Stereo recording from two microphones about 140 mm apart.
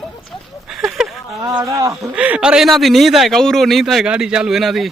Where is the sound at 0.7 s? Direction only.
5° right (ahead or behind).